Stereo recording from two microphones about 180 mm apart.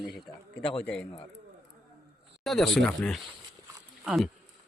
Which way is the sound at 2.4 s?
Centre (ahead or behind).